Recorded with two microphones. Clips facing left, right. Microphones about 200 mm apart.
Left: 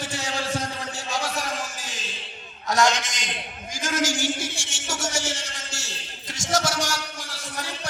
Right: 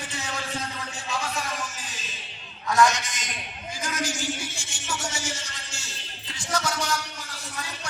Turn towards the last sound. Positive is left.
turn(degrees=80)